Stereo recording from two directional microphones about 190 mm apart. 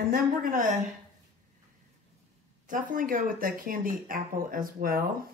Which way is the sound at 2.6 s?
45° right (ahead or behind).